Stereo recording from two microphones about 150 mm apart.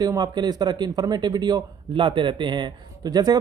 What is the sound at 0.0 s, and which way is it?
Speech, 25° right (ahead or behind).